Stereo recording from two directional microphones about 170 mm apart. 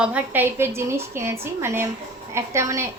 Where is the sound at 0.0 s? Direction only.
10° right (ahead or behind).